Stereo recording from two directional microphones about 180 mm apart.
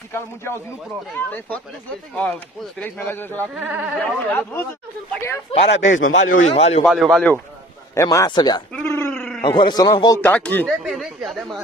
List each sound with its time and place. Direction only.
0.1 s a man's voice: 15° left (ahead or behind)
2.8 s a man's voice: 10° left (ahead or behind)
3.5 s speech: 5° right (ahead or behind)
4.0 s a man's voice: 10° left (ahead or behind)
5.5 s a man's voice: 35° left (ahead or behind)
5.8 s speech: 90° left
6.5 s a man's voice: 35° left (ahead or behind)
6.8 s speech: centre (ahead or behind)
7.9 s speech: 15° left (ahead or behind)
8.7 s a sound: 15° left (ahead or behind)
9.4 s speech: 25° left (ahead or behind); by 11.3 s centre (ahead or behind)